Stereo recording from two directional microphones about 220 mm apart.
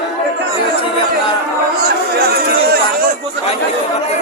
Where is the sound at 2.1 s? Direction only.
45° right (ahead or behind).